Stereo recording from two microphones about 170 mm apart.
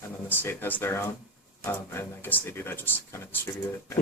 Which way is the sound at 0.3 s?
10° left (ahead or behind).